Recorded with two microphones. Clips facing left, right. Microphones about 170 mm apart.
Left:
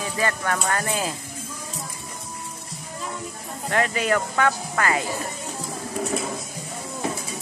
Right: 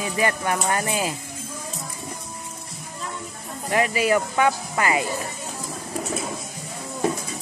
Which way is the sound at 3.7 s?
10° right (ahead or behind).